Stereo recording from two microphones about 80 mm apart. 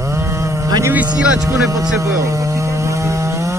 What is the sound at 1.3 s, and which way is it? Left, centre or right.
Speech, right.